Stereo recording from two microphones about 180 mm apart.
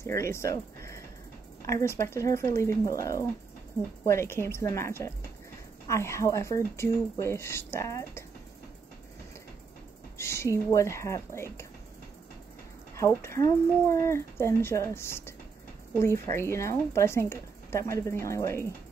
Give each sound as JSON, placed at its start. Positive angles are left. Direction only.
{"t": 0.0, "sound": "a woman's voice", "side_deg": 15}
{"t": 10.1, "sound": "a woman's voice", "side_deg": 15}
{"t": 13.1, "sound": "a woman's voice", "side_deg": 15}